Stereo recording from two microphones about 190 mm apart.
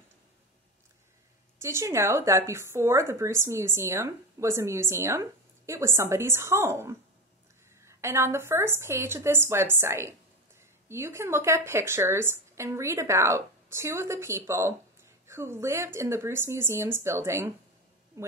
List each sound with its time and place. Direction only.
1.6 s a woman's voice: 15° right (ahead or behind)